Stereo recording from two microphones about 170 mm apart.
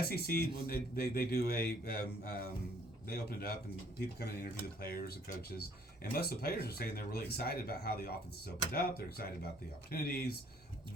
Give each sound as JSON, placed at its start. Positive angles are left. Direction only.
{"t": 0.0, "sound": "speech", "side_deg": 65}